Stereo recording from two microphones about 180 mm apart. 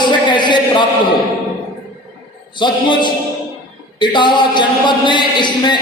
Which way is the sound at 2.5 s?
25° left (ahead or behind).